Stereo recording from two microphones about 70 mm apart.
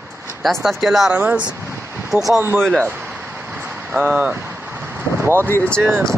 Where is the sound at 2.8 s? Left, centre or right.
Right.